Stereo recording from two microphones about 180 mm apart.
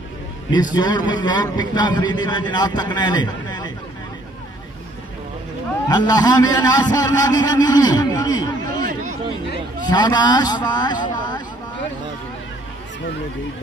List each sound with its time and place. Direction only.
0.5 s a man's voice: 25° left (ahead or behind)
5.9 s a man's voice: 20° left (ahead or behind)